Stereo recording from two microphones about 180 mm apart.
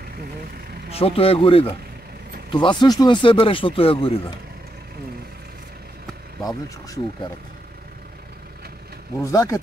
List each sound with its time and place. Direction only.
0.9 s speech: 30° left (ahead or behind)
9.2 s speech: 15° left (ahead or behind)